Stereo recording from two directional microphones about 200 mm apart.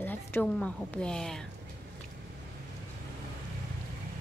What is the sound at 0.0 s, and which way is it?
A woman's voice, 10° left (ahead or behind).